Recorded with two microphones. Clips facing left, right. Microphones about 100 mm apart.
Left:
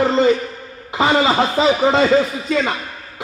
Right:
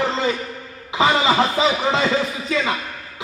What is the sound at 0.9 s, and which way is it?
Speech, 45° left (ahead or behind).